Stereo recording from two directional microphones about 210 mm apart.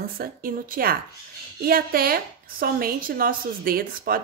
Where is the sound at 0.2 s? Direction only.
45° right (ahead or behind).